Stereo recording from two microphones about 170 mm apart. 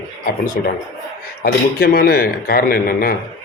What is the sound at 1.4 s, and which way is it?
Speech, 60° left (ahead or behind).